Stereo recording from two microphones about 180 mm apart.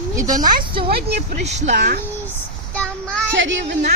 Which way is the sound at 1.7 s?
60° right (ahead or behind).